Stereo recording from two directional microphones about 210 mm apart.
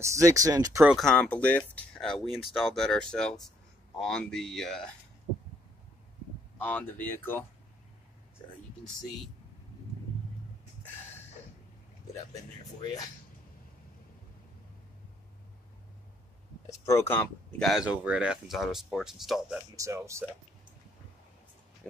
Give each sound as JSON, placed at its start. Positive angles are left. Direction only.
{"t": 0.0, "sound": "speech", "side_deg": -15}
{"t": 0.9, "sound": "speech", "side_deg": 5}
{"t": 6.6, "sound": "speech", "side_deg": 10}
{"t": 8.8, "sound": "speech", "side_deg": 0}
{"t": 16.6, "sound": "a sound", "side_deg": 15}
{"t": 17.1, "sound": "speech", "side_deg": 10}
{"t": 19.7, "sound": "speech", "side_deg": -15}